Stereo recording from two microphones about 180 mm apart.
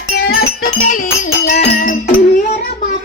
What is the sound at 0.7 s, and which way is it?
Music, 50° left (ahead or behind).